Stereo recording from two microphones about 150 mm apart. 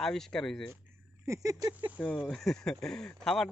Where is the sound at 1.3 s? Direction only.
20° right (ahead or behind).